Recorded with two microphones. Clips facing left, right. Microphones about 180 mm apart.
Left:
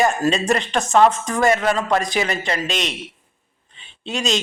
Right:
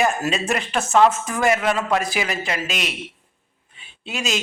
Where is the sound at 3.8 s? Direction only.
5° right (ahead or behind).